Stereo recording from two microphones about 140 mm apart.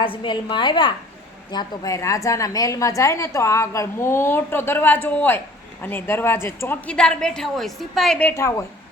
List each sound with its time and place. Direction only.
0.0 s a woman's voice: 40° left (ahead or behind); by 8.6 s 20° left (ahead or behind)